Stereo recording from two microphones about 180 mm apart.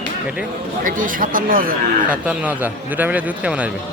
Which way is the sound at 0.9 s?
50° right (ahead or behind).